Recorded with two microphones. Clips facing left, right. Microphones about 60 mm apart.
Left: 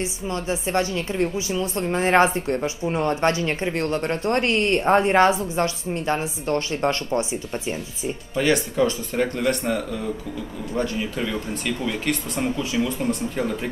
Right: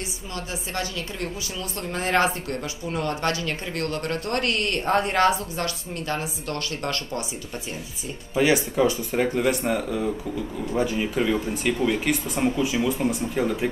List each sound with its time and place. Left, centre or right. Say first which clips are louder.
0.3 s a woman's voice: left 8 dB; left
8.4 s speech: even; centre